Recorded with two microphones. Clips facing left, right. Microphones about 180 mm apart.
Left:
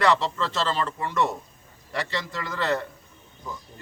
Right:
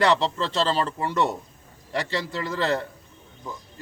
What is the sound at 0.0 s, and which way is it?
A man's voice, 30° right (ahead or behind).